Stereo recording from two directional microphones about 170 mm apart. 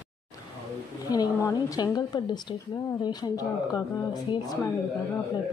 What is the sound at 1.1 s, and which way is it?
A woman's voice, 20° left (ahead or behind).